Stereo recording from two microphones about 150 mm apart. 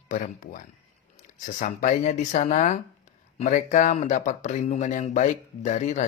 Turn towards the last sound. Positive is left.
turn(degrees=55)  # may be behind; listen again after turning